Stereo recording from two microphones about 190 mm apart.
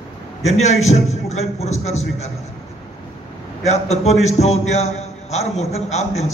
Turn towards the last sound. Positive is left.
turn(degrees=35)  # may be behind; listen again after turning